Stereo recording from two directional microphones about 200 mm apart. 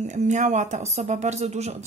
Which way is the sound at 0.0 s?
35° right (ahead or behind).